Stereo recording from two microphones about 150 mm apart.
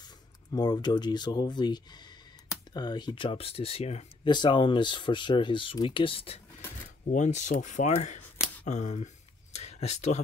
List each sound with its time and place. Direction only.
0.5 s speech: 25° left (ahead or behind); by 4.3 s 45° left (ahead or behind)
4.3 s speech: 30° left (ahead or behind)
7.1 s speech: 55° left (ahead or behind)
9.6 s a sound: 45° left (ahead or behind)